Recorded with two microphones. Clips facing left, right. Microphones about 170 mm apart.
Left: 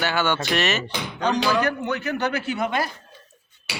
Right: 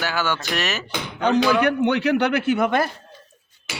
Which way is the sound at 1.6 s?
65° right (ahead or behind).